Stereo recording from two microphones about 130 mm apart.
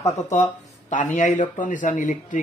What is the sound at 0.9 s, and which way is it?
Speech, 70° left (ahead or behind).